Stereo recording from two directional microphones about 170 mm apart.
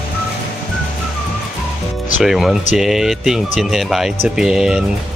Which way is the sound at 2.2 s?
Centre (ahead or behind).